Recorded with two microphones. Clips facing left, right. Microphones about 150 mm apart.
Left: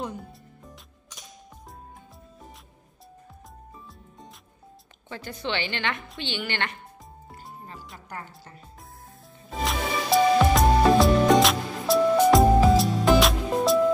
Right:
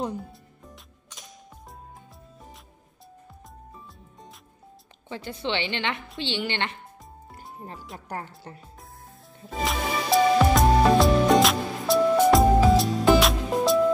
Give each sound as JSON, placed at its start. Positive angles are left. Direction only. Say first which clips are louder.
{"t": 5.1, "sound": "a woman's voice", "louder": "right 1 dB", "side_deg": -25}
{"t": 9.5, "sound": "music", "louder": "right 1 dB", "side_deg": 0}